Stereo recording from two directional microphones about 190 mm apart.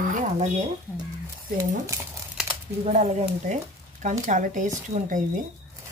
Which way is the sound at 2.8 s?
35° right (ahead or behind).